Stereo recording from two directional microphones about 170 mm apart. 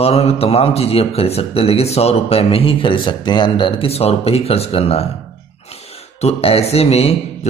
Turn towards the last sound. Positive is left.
turn(degrees=35)  # may be behind; listen again after turning